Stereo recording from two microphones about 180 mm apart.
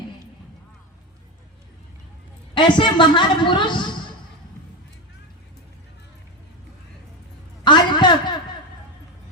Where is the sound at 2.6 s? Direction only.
25° left (ahead or behind).